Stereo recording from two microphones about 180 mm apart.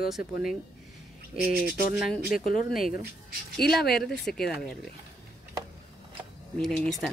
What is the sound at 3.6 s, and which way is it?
Speech, 60° left (ahead or behind).